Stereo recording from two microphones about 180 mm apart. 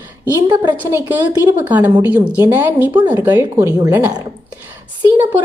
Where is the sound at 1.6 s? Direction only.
10° right (ahead or behind).